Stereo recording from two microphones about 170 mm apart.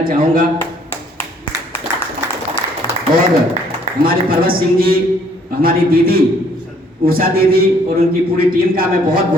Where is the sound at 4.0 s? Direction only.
60° right (ahead or behind).